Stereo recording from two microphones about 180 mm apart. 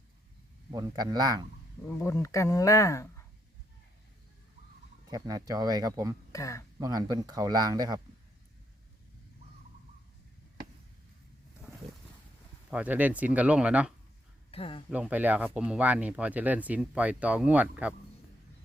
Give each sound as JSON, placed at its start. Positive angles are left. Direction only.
{"t": 0.7, "sound": "a man's voice", "side_deg": -20}
{"t": 1.9, "sound": "speech", "side_deg": 15}
{"t": 5.1, "sound": "a man's voice", "side_deg": -20}
{"t": 6.3, "sound": "speech", "side_deg": 20}
{"t": 6.7, "sound": "a man's voice", "side_deg": -20}
{"t": 12.7, "sound": "speech", "side_deg": -10}
{"t": 14.5, "sound": "speech", "side_deg": 30}
{"t": 14.8, "sound": "speech", "side_deg": -5}